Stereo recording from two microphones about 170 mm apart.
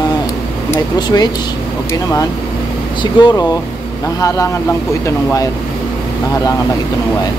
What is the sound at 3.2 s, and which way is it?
Speech, 30° left (ahead or behind).